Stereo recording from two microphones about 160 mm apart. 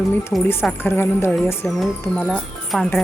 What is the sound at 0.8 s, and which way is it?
Speech, 15° left (ahead or behind).